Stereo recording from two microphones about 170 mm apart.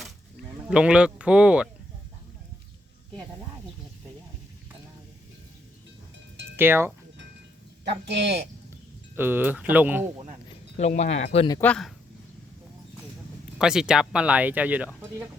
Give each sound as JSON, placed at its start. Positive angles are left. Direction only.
{"t": 0.7, "sound": "speech", "side_deg": -5}
{"t": 6.6, "sound": "speech", "side_deg": -15}
{"t": 7.9, "sound": "speech", "side_deg": -75}
{"t": 9.1, "sound": "speech", "side_deg": -10}
{"t": 10.5, "sound": "speech", "side_deg": 40}
{"t": 11.6, "sound": "speech", "side_deg": 5}
{"t": 13.6, "sound": "speech", "side_deg": -5}